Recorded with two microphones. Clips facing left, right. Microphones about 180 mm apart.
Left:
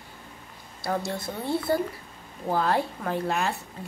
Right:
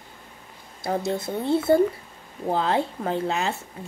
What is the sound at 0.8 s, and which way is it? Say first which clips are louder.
Speech: right 3 dB; 20° right (ahead or behind).